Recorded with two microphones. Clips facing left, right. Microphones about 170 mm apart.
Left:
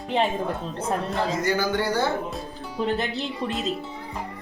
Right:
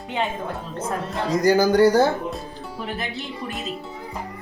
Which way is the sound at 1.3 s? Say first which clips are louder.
Right 11 dB; 40° right (ahead or behind).